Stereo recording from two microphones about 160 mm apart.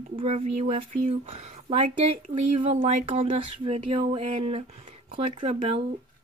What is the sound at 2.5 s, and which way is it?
Speech, 35° right (ahead or behind).